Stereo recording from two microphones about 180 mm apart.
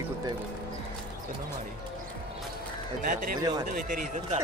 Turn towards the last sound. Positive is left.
turn(degrees=-50)  # may be behind; listen again after turning